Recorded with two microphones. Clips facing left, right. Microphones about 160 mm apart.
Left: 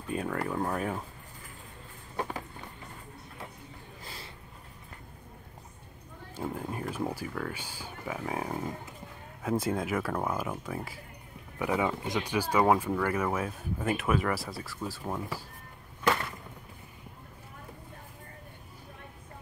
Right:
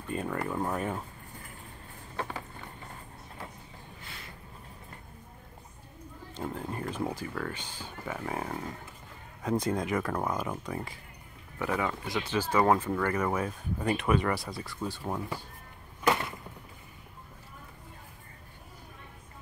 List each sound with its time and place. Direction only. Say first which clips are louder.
0.1 s speech: left 1 dB; centre (ahead or behind)
4.0 s a sound: left 4 dB; 35° left (ahead or behind)
6.3 s speech: left 1 dB; 5° left (ahead or behind)
11.5 s speech: left 2 dB; 15° left (ahead or behind)